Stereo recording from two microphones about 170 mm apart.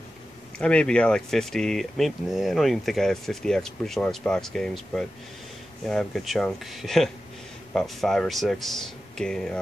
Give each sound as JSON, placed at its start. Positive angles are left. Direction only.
{"t": 0.6, "sound": "speech", "side_deg": 5}